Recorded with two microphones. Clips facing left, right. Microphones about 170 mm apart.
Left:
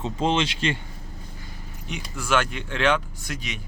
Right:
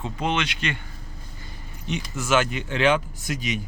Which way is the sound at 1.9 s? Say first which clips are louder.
Right 2 dB; centre (ahead or behind).